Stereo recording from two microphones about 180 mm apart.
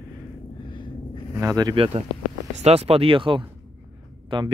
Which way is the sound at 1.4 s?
20° right (ahead or behind).